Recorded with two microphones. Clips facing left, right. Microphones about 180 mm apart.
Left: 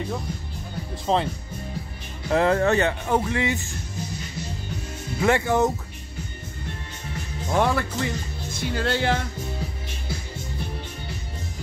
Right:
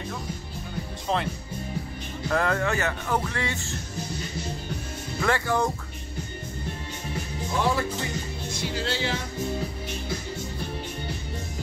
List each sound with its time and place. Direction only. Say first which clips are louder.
1.0 s speech: left 5 dB; 30° left (ahead or behind)
5.2 s speech: left 5 dB; 20° left (ahead or behind)
7.5 s speech: left 3 dB; 60° left (ahead or behind)